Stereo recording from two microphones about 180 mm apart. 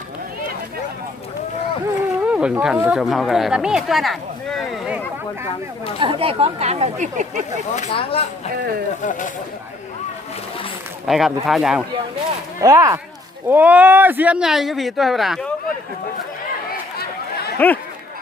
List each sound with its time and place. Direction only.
2.2 s speech: 5° right (ahead or behind)
6.0 s speech: 30° right (ahead or behind)
7.8 s speech: 35° left (ahead or behind)
8.5 s speech: 60° right (ahead or behind)
9.0 s speech: 45° left (ahead or behind)
11.0 s speech: centre (ahead or behind)
12.5 s speech: 15° right (ahead or behind); by 15.5 s centre (ahead or behind)
17.6 s speech: 10° left (ahead or behind)